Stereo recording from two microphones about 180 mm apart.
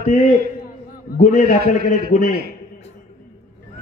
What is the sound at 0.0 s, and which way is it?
A man's voice, 45° left (ahead or behind).